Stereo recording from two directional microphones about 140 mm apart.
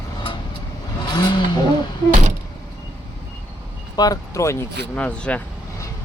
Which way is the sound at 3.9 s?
25° left (ahead or behind).